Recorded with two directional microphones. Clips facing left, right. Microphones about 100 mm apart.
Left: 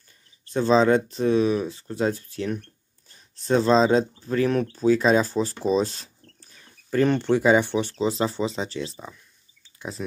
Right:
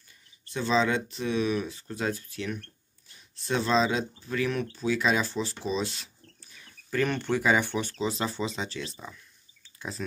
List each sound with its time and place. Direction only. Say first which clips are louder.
0.5 s speech: left 7 dB; 40° left (ahead or behind); by 10.0 s 20° left (ahead or behind)